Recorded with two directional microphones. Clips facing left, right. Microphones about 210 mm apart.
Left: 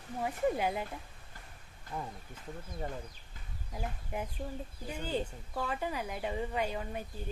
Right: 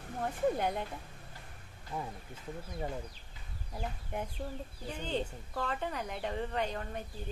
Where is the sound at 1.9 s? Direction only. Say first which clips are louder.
Right 1 dB; 5° right (ahead or behind).